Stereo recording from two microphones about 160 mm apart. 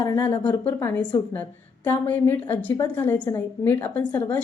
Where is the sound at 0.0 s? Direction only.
15° left (ahead or behind).